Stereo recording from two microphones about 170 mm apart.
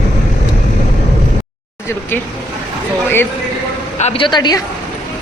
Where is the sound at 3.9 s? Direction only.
40° left (ahead or behind).